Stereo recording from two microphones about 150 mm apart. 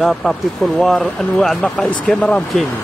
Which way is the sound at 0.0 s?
Centre (ahead or behind).